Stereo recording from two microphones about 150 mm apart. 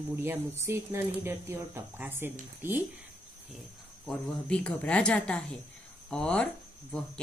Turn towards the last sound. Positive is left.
turn(degrees=5)  # may be behind; listen again after turning